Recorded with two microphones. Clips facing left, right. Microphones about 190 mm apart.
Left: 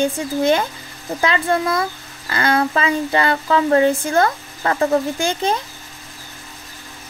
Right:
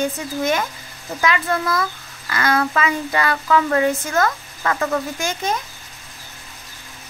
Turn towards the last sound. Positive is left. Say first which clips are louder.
# left 4 dB
turn(degrees=30)  # may be behind; listen again after turning